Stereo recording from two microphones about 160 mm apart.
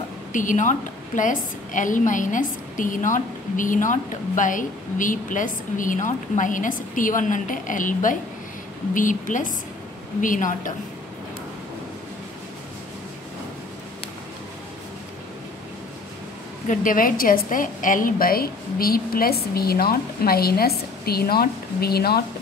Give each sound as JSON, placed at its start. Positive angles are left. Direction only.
{"t": 0.3, "sound": "a woman's voice", "side_deg": 55}
{"t": 16.6, "sound": "a woman's voice", "side_deg": 60}